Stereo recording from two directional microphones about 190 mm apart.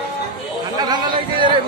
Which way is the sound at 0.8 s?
20° right (ahead or behind).